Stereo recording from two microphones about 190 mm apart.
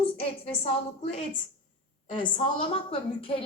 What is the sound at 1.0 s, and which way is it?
A woman's voice, 30° left (ahead or behind).